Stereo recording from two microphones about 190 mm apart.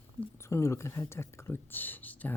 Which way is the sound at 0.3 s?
15° left (ahead or behind).